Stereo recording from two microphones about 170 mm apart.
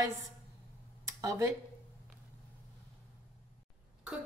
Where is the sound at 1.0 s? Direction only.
20° right (ahead or behind).